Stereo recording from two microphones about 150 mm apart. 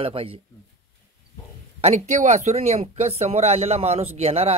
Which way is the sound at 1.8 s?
50° right (ahead or behind).